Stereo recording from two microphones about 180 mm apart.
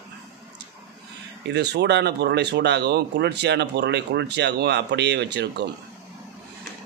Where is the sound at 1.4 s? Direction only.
70° right (ahead or behind).